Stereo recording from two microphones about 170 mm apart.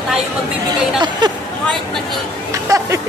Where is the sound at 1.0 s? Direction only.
25° right (ahead or behind).